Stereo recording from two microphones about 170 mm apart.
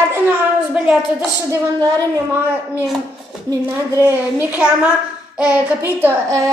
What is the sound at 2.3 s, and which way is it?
A woman's voice, 10° right (ahead or behind).